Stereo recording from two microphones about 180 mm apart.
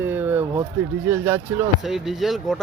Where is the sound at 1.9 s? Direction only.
Centre (ahead or behind).